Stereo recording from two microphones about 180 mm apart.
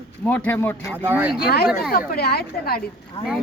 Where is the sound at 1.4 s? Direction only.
60° left (ahead or behind).